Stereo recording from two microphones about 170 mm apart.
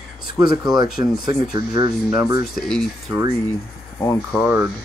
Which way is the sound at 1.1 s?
60° left (ahead or behind).